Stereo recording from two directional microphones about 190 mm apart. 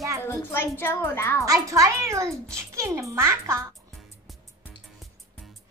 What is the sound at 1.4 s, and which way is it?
A child's voice, 15° right (ahead or behind).